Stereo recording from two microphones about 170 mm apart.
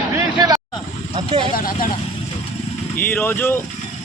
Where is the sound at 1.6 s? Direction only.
55° left (ahead or behind).